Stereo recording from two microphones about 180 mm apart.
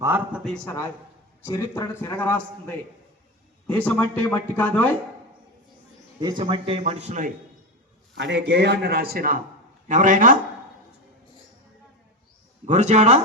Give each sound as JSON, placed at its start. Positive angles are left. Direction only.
{"t": 0.0, "sound": "a man's voice", "side_deg": -10}
{"t": 1.5, "sound": "speech", "side_deg": 20}
{"t": 3.7, "sound": "speech", "side_deg": 10}
{"t": 6.1, "sound": "speech", "side_deg": -25}
{"t": 8.1, "sound": "a man's voice", "side_deg": -75}
{"t": 12.6, "sound": "speech", "side_deg": -40}